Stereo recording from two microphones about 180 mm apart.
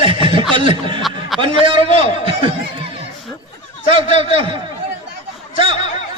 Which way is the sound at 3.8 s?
30° right (ahead or behind).